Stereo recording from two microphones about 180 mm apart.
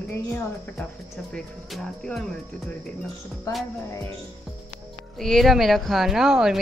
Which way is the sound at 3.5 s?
15° left (ahead or behind).